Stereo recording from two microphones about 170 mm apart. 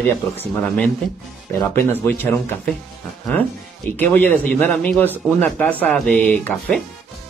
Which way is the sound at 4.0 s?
10° left (ahead or behind).